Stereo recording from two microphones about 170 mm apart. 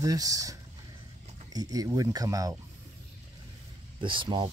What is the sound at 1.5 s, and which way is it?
Speech, 20° right (ahead or behind).